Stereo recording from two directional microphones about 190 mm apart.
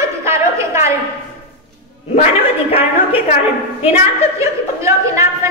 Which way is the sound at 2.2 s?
30° left (ahead or behind).